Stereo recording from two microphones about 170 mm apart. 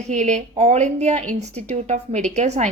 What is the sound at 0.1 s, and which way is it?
A woman's voice, 45° right (ahead or behind).